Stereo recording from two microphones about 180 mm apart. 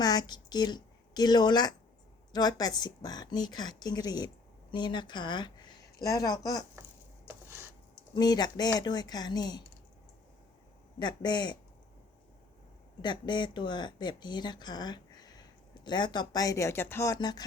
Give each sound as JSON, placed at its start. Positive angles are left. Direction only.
{"t": 0.0, "sound": "a woman's voice", "side_deg": 20}
{"t": 7.3, "sound": "a sound", "side_deg": -15}
{"t": 8.1, "sound": "speech", "side_deg": 20}
{"t": 11.0, "sound": "speech", "side_deg": 25}
{"t": 13.0, "sound": "speech", "side_deg": 25}